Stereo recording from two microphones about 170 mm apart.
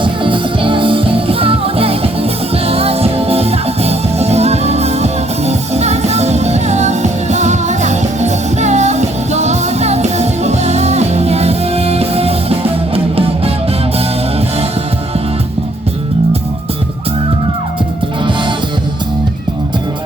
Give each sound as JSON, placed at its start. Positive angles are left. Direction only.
{"t": 0.0, "sound": "music", "side_deg": -30}